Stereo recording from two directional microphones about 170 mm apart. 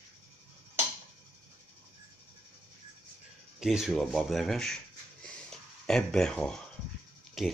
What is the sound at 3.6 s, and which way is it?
Speech, 5° right (ahead or behind).